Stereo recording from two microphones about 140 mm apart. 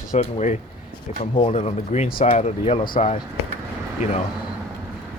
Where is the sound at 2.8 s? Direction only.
90° left.